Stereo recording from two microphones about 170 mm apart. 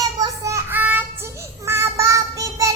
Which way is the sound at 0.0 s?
20° right (ahead or behind).